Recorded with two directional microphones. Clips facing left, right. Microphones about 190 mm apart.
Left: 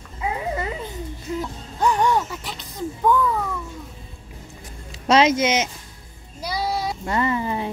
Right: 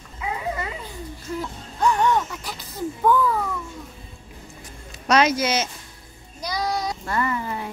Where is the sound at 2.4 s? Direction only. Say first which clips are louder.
Even; centre (ahead or behind).